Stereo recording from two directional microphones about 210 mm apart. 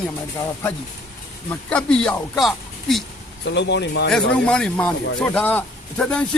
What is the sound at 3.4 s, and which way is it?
Speech, 55° left (ahead or behind).